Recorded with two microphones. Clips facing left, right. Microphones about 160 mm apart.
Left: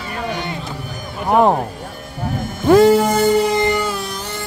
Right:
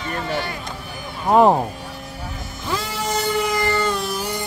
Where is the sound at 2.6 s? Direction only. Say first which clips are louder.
Left 16 dB; 50° left (ahead or behind).